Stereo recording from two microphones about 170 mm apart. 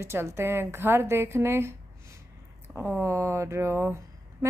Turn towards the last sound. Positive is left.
turn(degrees=-15)  # may be behind; listen again after turning